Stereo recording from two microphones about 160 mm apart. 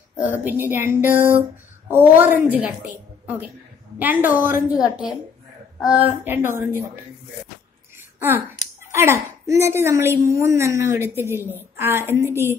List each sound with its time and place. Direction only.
0.4 s a woman's voice: 10° right (ahead or behind)
8.9 s a woman's voice: 15° right (ahead or behind)